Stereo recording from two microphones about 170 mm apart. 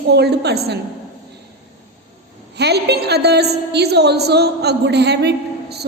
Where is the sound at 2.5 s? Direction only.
75° right (ahead or behind).